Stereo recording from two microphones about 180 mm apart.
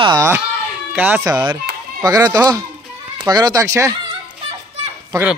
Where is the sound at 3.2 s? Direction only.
20° right (ahead or behind).